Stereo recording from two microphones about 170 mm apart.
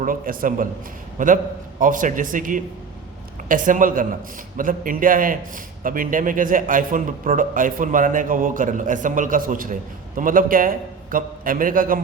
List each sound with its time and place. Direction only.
0.0 s a man's voice: 55° right (ahead or behind)